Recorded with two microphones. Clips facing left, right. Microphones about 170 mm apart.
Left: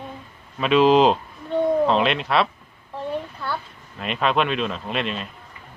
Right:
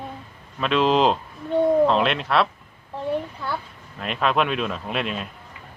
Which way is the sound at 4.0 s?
Centre (ahead or behind).